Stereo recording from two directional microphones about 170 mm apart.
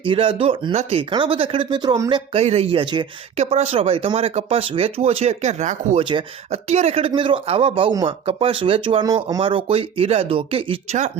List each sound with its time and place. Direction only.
0.0 s speech: 30° right (ahead or behind)